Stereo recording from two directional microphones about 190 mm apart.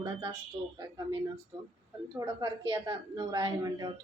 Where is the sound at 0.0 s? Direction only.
25° right (ahead or behind).